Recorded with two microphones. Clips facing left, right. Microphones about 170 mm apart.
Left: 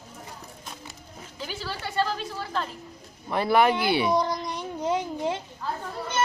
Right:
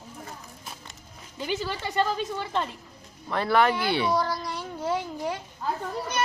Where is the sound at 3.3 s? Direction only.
15° left (ahead or behind).